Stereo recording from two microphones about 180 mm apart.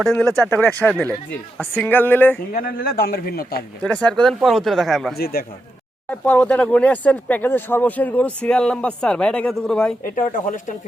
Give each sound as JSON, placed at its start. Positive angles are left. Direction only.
{"t": 0.0, "sound": "speech", "side_deg": 0}
{"t": 2.5, "sound": "a man's voice", "side_deg": 55}
{"t": 3.8, "sound": "speech", "side_deg": 5}
{"t": 5.1, "sound": "a man's voice", "side_deg": 55}
{"t": 6.1, "sound": "speech", "side_deg": 10}
{"t": 10.0, "sound": "speech", "side_deg": 50}